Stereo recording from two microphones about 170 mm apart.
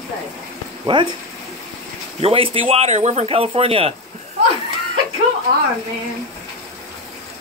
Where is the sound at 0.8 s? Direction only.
25° right (ahead or behind).